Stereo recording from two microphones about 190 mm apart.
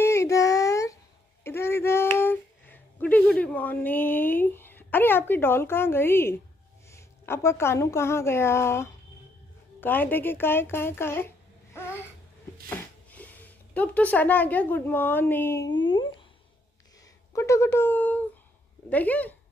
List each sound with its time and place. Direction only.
0.0 s child singing: 15° left (ahead or behind)
1.4 s a sound: 15° left (ahead or behind)
6.9 s a woman's voice: 15° left (ahead or behind)
11.7 s babbling: 15° left (ahead or behind)
12.6 s speech: 10° left (ahead or behind)
15.8 s a sound: 25° left (ahead or behind)
17.3 s a child's voice: 15° left (ahead or behind)